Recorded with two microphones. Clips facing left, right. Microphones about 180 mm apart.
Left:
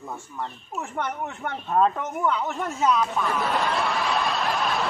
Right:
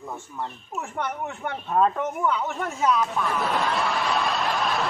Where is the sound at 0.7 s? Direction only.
5° right (ahead or behind).